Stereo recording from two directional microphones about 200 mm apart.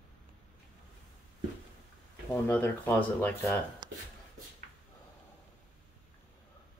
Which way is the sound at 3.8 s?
20° right (ahead or behind).